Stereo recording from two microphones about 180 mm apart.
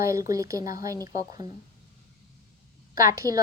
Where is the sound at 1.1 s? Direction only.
45° left (ahead or behind).